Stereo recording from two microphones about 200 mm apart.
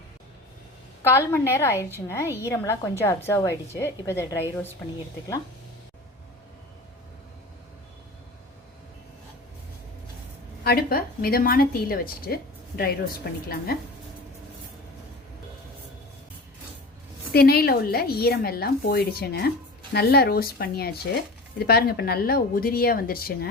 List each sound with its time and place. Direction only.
1.0 s a woman's voice: 10° left (ahead or behind)
10.6 s a woman's voice: 50° left (ahead or behind)
17.3 s a woman's voice: 50° left (ahead or behind)